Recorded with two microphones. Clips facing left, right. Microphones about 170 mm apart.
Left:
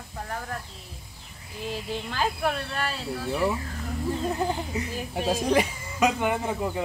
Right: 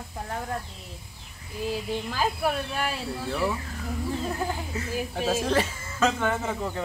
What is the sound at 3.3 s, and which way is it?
Speech, 15° left (ahead or behind).